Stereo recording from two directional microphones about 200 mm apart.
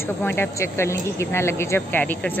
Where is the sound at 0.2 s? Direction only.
10° left (ahead or behind).